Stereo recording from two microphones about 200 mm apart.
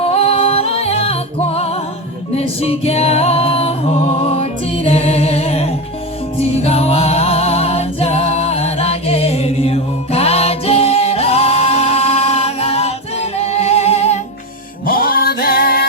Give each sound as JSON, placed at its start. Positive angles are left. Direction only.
{"t": 0.0, "sound": "music", "side_deg": 30}
{"t": 14.8, "sound": "music", "side_deg": 45}